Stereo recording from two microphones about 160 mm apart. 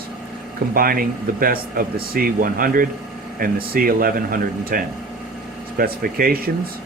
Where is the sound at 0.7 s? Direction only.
65° right (ahead or behind).